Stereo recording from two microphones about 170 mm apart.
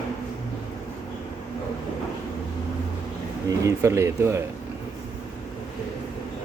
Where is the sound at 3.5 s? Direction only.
15° right (ahead or behind).